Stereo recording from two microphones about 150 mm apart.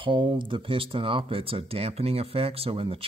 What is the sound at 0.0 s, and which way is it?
Speech, 35° right (ahead or behind).